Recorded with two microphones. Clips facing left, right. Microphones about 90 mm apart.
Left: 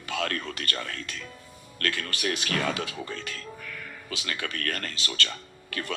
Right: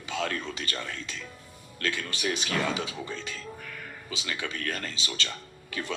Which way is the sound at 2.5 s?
20° right (ahead or behind).